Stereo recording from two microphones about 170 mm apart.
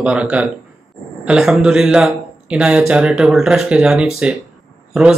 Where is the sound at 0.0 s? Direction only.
5° right (ahead or behind).